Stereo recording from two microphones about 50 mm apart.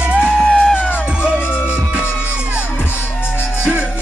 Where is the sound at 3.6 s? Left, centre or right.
Right.